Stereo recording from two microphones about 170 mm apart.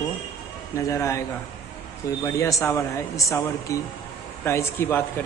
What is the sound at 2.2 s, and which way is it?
Speech, 20° left (ahead or behind).